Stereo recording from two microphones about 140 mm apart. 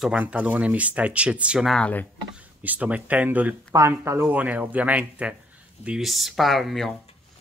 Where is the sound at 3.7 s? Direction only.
20° right (ahead or behind); by 6.9 s centre (ahead or behind).